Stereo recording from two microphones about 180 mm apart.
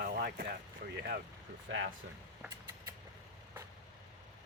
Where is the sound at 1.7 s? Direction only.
90° right.